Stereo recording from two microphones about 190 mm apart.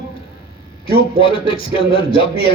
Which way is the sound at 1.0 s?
30° left (ahead or behind).